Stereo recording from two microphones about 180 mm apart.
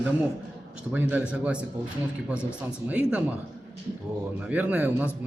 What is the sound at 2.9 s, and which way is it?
Speech, 5° right (ahead or behind).